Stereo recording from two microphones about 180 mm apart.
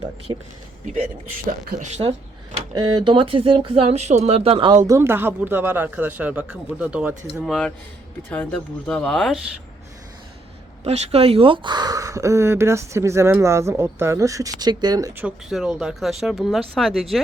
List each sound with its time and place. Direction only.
0.3 s speech: 20° right (ahead or behind)
1.8 s speech: 30° right (ahead or behind)
4.8 s speech: 15° right (ahead or behind)
7.4 s speech: centre (ahead or behind)
10.8 s speech: 35° right (ahead or behind)
15.2 s speech: 5° right (ahead or behind)